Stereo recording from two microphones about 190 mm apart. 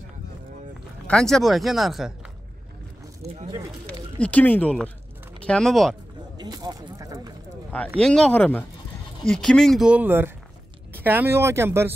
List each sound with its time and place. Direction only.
1.0 s speech: 5° left (ahead or behind)
3.8 s speech: 5° left (ahead or behind)
6.3 s a sound: 20° right (ahead or behind)
8.0 s speech: 5° left (ahead or behind); by 11.9 s 15° right (ahead or behind)